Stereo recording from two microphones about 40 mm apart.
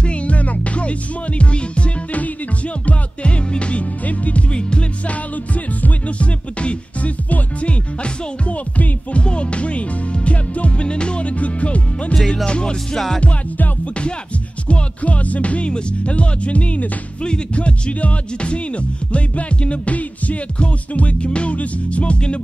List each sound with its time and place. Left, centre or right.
0.0 s music: left
4.6 s music: left
9.2 s music: left
12.9 s music: centre
13.2 s music: left
14.7 s speech: left